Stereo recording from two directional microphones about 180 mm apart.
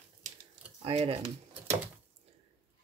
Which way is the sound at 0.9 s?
35° right (ahead or behind).